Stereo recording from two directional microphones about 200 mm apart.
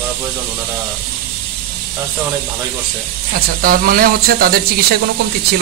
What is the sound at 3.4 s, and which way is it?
Speech, 45° right (ahead or behind).